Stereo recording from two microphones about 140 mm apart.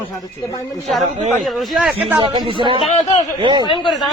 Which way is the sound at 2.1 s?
35° right (ahead or behind).